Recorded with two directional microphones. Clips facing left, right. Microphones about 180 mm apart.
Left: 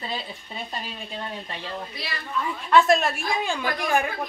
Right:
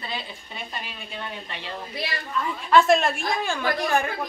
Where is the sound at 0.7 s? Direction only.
35° left (ahead or behind).